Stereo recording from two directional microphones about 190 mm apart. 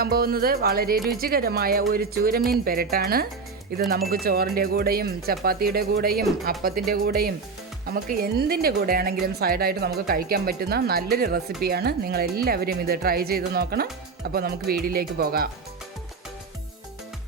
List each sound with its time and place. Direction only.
0.0 s a woman's voice: 50° right (ahead or behind)